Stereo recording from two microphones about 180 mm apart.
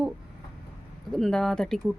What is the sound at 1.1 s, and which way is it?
Speech, 5° left (ahead or behind).